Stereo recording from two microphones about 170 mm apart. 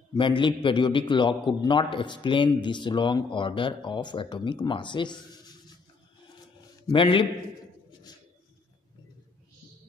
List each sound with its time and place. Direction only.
0.2 s a man's voice: 30° left (ahead or behind)
6.9 s a man's voice: 30° left (ahead or behind)